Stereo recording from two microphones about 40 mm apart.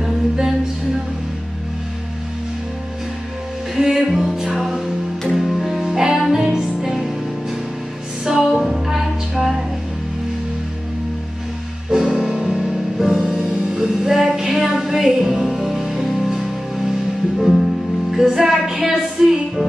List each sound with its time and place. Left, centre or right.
3.7 s music: centre
4.6 s music: centre
8.3 s music: centre
11.9 s music: centre
12.7 s music: centre
13.2 s music: right; by 19.6 s centre